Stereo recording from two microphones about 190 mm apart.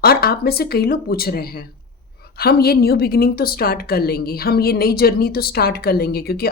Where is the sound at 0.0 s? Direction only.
55° left (ahead or behind).